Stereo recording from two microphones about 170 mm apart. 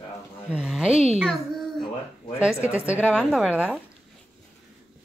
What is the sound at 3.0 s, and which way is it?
Speech, 5° right (ahead or behind).